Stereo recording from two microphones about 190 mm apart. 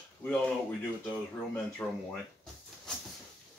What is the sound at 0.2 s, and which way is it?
Speech, 10° left (ahead or behind).